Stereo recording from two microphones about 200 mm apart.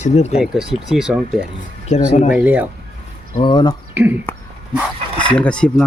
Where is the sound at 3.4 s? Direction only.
25° left (ahead or behind).